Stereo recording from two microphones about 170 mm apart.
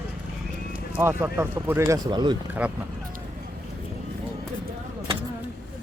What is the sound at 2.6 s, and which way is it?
Speech, 10° right (ahead or behind).